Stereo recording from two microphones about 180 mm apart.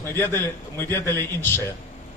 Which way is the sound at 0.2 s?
10° left (ahead or behind).